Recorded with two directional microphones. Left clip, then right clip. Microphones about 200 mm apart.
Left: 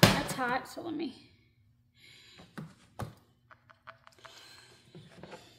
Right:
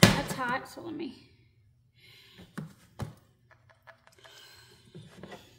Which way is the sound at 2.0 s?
20° left (ahead or behind).